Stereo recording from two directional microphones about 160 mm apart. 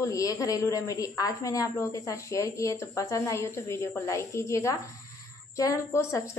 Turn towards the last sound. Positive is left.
turn(degrees=15)  # may be behind; listen again after turning